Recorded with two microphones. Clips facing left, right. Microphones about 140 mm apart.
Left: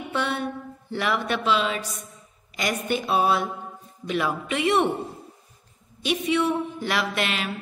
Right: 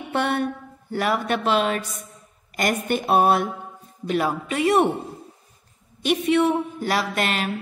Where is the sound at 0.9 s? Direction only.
45° right (ahead or behind).